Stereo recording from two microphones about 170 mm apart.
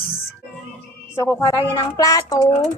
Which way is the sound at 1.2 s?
10° left (ahead or behind).